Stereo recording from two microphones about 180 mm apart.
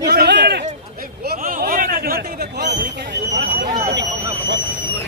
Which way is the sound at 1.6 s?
50° right (ahead or behind).